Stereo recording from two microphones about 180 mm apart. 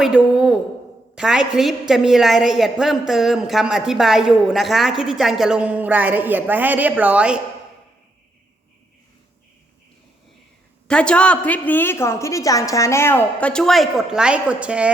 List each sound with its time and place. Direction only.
0.0 s a woman's voice: 5° right (ahead or behind)
10.8 s a woman's voice: 5° left (ahead or behind)